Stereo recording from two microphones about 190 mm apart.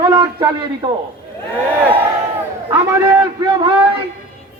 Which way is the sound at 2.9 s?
15° right (ahead or behind).